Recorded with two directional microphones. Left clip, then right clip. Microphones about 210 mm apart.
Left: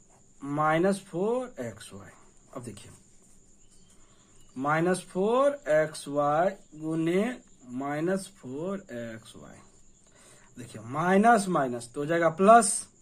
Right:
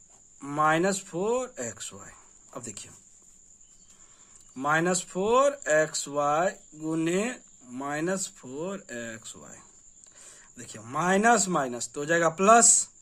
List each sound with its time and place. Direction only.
0.4 s speech: 25° right (ahead or behind)
4.6 s speech: 25° right (ahead or behind)